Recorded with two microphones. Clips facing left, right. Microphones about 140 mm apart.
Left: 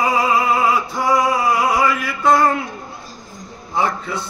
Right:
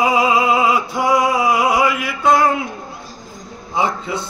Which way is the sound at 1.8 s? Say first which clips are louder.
Right 1 dB; 10° right (ahead or behind).